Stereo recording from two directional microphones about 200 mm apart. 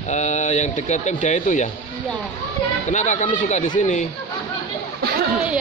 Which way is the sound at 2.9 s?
35° left (ahead or behind).